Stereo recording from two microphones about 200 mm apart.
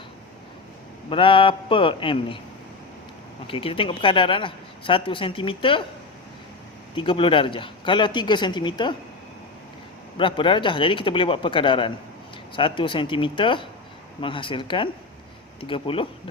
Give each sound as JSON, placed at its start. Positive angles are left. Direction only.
{"t": 1.1, "sound": "speech", "side_deg": 25}
{"t": 3.4, "sound": "speech", "side_deg": 25}
{"t": 6.9, "sound": "speech", "side_deg": 25}
{"t": 10.2, "sound": "speech", "side_deg": 25}